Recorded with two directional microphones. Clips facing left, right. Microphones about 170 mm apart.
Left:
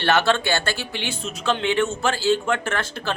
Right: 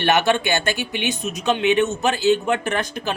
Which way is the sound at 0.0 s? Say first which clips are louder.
Right 1 dB; 15° right (ahead or behind).